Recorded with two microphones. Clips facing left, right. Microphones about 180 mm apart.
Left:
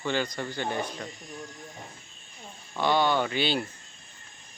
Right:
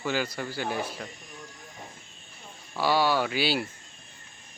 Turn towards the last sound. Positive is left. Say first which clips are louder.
# even
turn(degrees=-5)  # may be behind; listen again after turning